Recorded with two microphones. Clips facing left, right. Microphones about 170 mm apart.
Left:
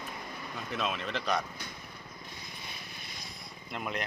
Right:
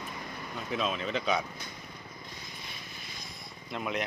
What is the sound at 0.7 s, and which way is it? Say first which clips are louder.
Speech: right 3 dB; centre (ahead or behind).